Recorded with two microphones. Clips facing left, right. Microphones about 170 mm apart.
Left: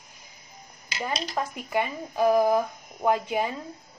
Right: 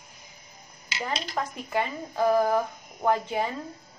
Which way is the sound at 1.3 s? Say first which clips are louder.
Left 1 dB; 15° left (ahead or behind).